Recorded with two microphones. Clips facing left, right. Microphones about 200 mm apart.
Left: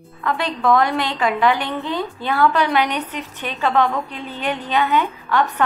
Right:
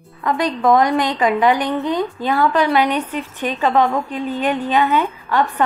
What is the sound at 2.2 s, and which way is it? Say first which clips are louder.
A woman's voice: even; 40° right (ahead or behind).